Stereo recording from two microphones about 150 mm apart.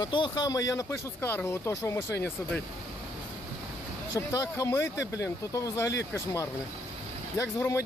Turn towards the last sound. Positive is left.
turn(degrees=20)  # may be behind; listen again after turning